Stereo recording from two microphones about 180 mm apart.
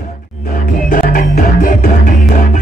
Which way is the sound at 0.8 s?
50° left (ahead or behind).